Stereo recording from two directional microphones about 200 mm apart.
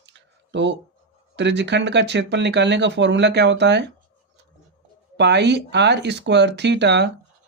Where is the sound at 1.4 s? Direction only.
60° right (ahead or behind).